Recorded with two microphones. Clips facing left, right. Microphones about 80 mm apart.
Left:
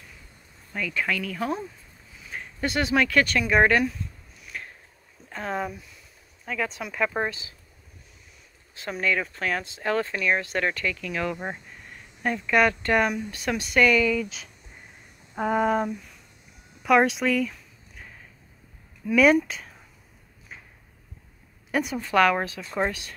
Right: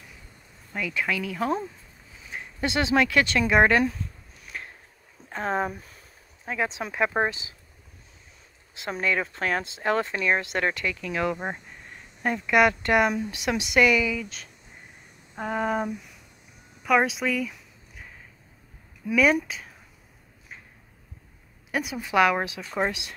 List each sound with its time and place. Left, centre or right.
0.7 s speech: centre
2.1 s a sound: right
3.3 s speech: right
4.4 s a sound: right
5.3 s speech: right
6.4 s speech: right
8.7 s speech: right; by 15.9 s centre
16.8 s a sound: centre
19.0 s speech: centre
21.7 s speech: centre